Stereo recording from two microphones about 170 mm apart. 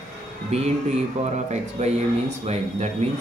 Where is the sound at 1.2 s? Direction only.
40° right (ahead or behind).